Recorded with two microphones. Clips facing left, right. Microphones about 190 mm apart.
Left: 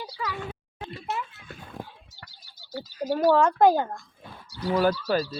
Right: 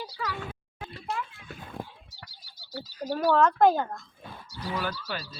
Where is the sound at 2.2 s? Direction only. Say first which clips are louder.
Right 1 dB; 50° left (ahead or behind).